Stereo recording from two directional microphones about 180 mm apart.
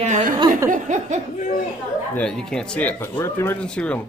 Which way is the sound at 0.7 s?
45° right (ahead or behind).